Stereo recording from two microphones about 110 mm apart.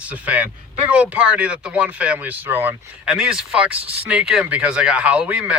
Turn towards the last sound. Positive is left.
turn(degrees=-10)  # may be behind; listen again after turning